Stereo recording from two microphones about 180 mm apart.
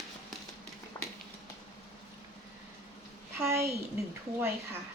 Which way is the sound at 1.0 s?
15° left (ahead or behind).